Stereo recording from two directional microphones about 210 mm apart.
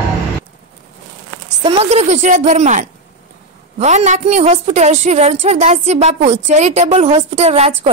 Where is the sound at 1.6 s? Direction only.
30° right (ahead or behind).